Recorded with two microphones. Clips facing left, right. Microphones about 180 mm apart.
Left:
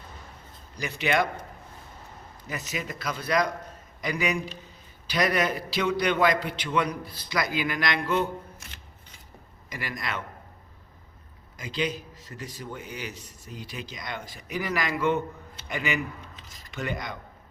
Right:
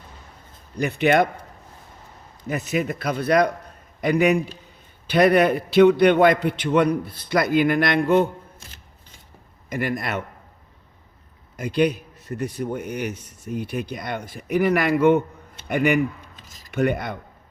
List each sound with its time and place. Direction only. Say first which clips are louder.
0.8 s a man's voice: right 8 dB; 55° right (ahead or behind)
2.5 s a man's voice: right 10 dB; 55° right (ahead or behind)
9.6 s a man's voice: right 9 dB; 55° right (ahead or behind)
11.5 s a man's voice: right 9 dB; 60° right (ahead or behind)